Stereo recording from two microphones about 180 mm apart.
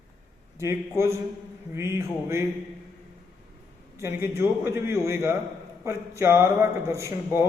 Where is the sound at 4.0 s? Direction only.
15° right (ahead or behind).